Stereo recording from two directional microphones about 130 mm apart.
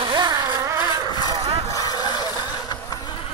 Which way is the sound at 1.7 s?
30° left (ahead or behind).